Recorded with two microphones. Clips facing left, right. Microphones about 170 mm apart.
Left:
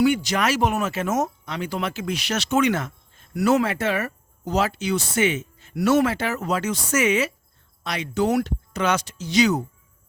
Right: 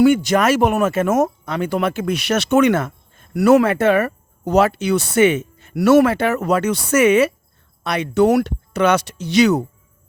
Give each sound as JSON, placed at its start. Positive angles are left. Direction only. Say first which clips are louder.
{"t": 0.0, "sound": "speech", "louder": "right 7 dB", "side_deg": -50}